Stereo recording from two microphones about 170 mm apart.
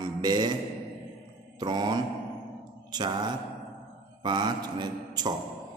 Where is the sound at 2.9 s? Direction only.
25° right (ahead or behind).